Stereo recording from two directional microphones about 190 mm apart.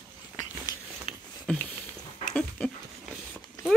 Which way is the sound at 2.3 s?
5° left (ahead or behind).